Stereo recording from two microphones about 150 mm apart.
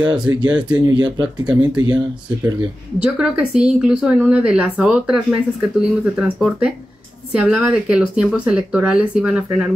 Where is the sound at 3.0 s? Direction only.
5° right (ahead or behind).